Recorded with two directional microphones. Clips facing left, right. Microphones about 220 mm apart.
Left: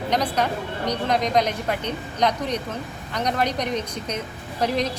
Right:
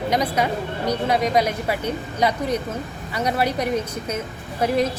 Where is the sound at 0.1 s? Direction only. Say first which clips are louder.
Right 1 dB; 10° right (ahead or behind).